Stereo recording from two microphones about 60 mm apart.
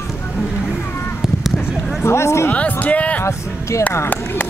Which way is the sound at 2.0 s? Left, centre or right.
Left.